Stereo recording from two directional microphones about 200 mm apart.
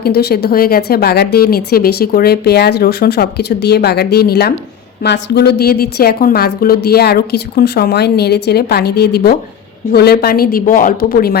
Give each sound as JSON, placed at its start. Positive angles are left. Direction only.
{"t": 0.0, "sound": "a woman's voice", "side_deg": 55}